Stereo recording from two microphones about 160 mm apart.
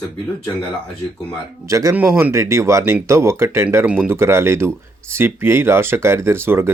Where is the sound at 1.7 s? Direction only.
20° right (ahead or behind).